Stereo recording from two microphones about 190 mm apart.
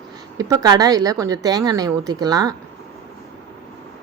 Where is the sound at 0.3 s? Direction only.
20° right (ahead or behind).